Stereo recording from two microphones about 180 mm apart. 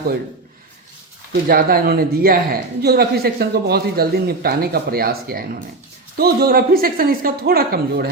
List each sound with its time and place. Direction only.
1.3 s speech: 55° right (ahead or behind)